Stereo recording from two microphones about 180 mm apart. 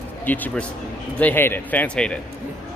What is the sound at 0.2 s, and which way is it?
Speech, 10° left (ahead or behind).